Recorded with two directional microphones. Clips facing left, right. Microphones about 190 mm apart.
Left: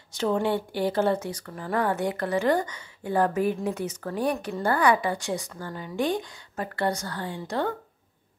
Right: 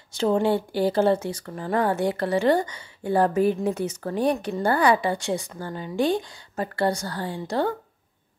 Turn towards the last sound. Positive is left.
turn(degrees=-35)  # may be behind; listen again after turning